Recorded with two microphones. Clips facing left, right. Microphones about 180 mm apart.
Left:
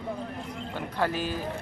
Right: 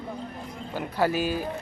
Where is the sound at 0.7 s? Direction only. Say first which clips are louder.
Right 4 dB; 5° right (ahead or behind).